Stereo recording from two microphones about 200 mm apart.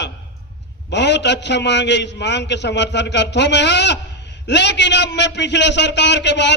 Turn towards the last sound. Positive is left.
turn(degrees=60)  # may be behind; listen again after turning